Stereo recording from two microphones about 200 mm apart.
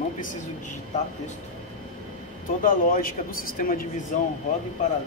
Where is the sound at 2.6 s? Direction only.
45° left (ahead or behind).